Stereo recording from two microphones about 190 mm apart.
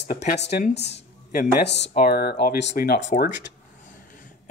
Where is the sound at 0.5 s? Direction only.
60° left (ahead or behind).